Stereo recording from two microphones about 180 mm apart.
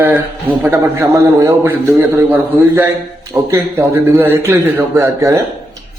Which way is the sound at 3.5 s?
15° right (ahead or behind).